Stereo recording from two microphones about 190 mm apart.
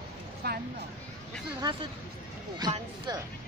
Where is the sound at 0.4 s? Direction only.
55° right (ahead or behind).